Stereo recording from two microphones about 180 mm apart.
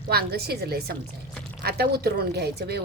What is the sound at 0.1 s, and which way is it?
Speech, 60° right (ahead or behind).